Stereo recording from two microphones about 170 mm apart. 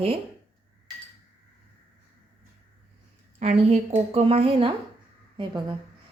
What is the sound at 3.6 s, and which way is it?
A woman's voice, 40° right (ahead or behind).